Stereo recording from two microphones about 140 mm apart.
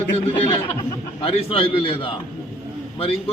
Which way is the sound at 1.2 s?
45° left (ahead or behind).